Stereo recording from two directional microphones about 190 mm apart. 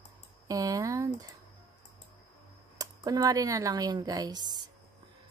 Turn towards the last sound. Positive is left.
turn(degrees=-20)  # may be behind; listen again after turning